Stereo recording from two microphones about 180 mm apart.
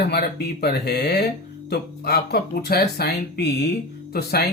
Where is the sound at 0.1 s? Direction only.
65° left (ahead or behind).